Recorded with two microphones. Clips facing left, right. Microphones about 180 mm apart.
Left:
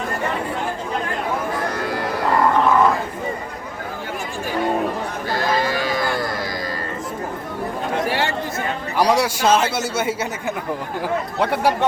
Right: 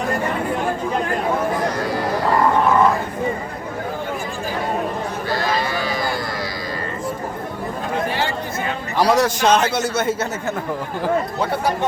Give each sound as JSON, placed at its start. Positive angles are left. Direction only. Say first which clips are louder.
{"t": 8.0, "sound": "a sound", "louder": "left 1 dB", "side_deg": 75}
{"t": 9.0, "sound": "speech", "louder": "right 1 dB", "side_deg": 10}
{"t": 11.3, "sound": "speech", "louder": "left 2 dB", "side_deg": 70}